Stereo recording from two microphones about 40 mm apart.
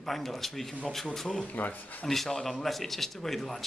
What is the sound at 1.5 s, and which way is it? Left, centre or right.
Speech, left.